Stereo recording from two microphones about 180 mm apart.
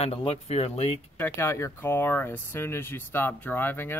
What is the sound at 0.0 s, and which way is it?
Speech, 35° left (ahead or behind).